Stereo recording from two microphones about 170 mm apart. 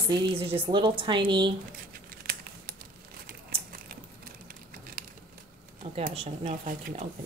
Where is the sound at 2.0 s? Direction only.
60° right (ahead or behind).